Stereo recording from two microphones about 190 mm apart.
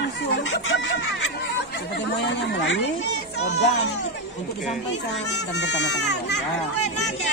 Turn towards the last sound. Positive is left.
turn(degrees=65)  # may be behind; listen again after turning